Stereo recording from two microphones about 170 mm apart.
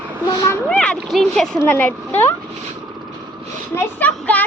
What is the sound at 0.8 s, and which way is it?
A child's voice, centre (ahead or behind).